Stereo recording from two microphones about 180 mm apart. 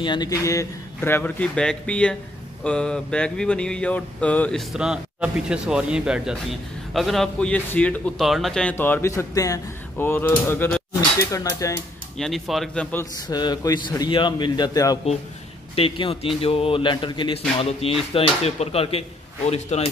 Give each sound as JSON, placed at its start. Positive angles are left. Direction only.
{"t": 0.0, "sound": "a man's voice", "side_deg": 25}
{"t": 12.2, "sound": "speech", "side_deg": 0}
{"t": 13.3, "sound": "a man's voice", "side_deg": 25}
{"t": 15.7, "sound": "a man's voice", "side_deg": 30}